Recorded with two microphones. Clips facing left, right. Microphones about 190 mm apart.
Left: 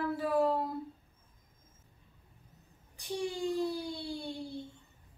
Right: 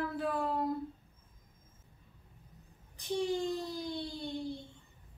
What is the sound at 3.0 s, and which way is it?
Speech, 10° left (ahead or behind).